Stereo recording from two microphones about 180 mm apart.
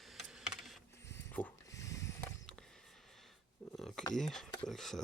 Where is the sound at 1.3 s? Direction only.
10° left (ahead or behind).